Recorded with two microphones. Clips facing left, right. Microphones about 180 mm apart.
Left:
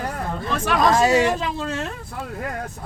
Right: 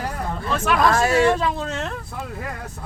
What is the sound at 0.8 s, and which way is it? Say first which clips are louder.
Speech: left 1 dB; 20° left (ahead or behind).